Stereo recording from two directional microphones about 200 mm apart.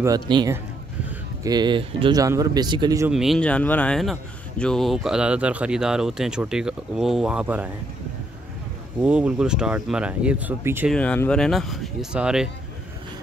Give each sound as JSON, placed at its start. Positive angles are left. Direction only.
{"t": 0.0, "sound": "speech", "side_deg": -20}
{"t": 3.1, "sound": "speech", "side_deg": 0}
{"t": 9.0, "sound": "speech", "side_deg": -5}
{"t": 10.9, "sound": "speech", "side_deg": 5}